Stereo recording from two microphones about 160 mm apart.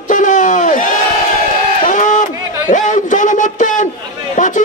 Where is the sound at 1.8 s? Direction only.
55° left (ahead or behind).